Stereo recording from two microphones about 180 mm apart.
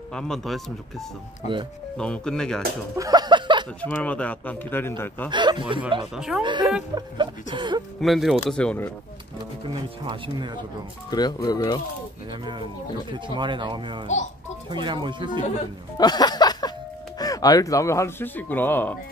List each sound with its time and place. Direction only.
0.1 s speech: 5° left (ahead or behind)
2.0 s speech: 5° left (ahead or behind)
3.0 s a sound: 20° right (ahead or behind)
3.8 s speech: 5° left (ahead or behind)
5.3 s chuckle: 25° right (ahead or behind)
6.1 s speech: 5° right (ahead or behind)
6.4 s chuckle: 25° right (ahead or behind)
8.0 s speech: centre (ahead or behind)
10.0 s chuckle: 25° right (ahead or behind)
11.1 s speech: 20° left (ahead or behind)
12.3 s chuckle: 25° right (ahead or behind)
16.0 s music: 25° left (ahead or behind)
17.2 s speech: 20° left (ahead or behind)